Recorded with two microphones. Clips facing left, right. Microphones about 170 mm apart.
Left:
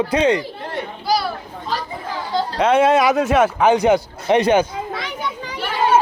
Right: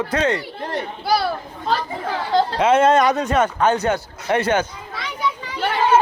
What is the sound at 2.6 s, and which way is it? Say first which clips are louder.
A man's voice: left 2 dB; centre (ahead or behind).